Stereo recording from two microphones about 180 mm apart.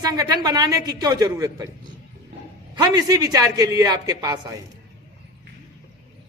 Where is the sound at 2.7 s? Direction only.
20° right (ahead or behind).